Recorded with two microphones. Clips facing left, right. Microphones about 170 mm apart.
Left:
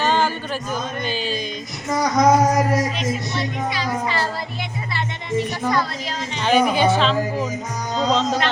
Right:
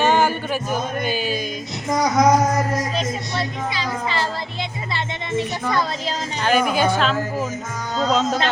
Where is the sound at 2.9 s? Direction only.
30° right (ahead or behind).